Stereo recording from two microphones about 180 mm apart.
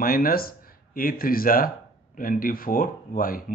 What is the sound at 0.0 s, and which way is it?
Speech, 55° left (ahead or behind).